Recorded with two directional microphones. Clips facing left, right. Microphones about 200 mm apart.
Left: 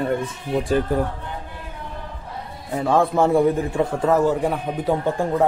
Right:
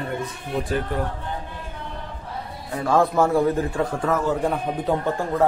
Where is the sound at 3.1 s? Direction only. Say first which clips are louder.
Left 2 dB; 20° left (ahead or behind).